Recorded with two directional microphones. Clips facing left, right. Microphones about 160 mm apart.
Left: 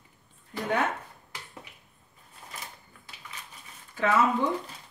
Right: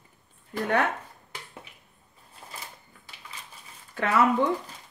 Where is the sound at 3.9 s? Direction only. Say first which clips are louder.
Even; 65° right (ahead or behind).